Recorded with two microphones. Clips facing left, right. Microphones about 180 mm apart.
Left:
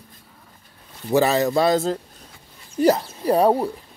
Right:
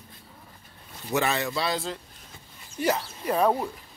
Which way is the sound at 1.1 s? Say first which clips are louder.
Left 8 dB; 35° left (ahead or behind).